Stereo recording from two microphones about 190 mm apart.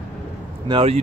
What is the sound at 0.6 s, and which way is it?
Speech, 30° right (ahead or behind).